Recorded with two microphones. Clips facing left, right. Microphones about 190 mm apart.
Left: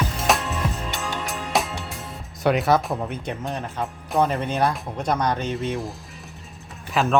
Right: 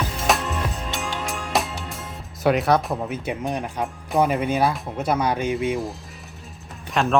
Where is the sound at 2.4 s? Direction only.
Centre (ahead or behind).